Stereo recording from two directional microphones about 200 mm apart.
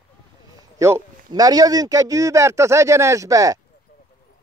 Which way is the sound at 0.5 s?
15° right (ahead or behind).